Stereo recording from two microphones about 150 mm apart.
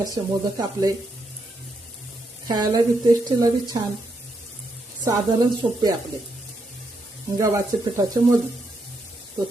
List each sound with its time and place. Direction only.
0.0 s speech: 25° right (ahead or behind)
2.5 s speech: 25° right (ahead or behind)
5.0 s speech: 25° right (ahead or behind)
7.3 s speech: 20° right (ahead or behind)